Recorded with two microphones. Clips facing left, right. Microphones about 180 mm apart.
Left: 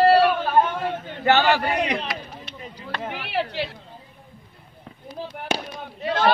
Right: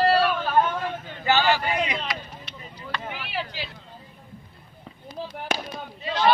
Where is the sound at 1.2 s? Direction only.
60° left (ahead or behind).